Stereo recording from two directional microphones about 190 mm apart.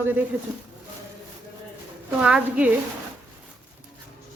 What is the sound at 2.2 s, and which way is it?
Speech, 5° right (ahead or behind).